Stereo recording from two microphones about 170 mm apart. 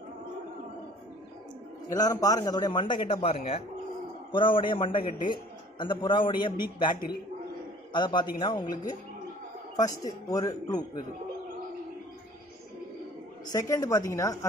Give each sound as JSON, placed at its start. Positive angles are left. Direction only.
{"t": 1.9, "sound": "a man's voice", "side_deg": 20}
{"t": 9.8, "sound": "a man's voice", "side_deg": 20}
{"t": 13.5, "sound": "a man's voice", "side_deg": 20}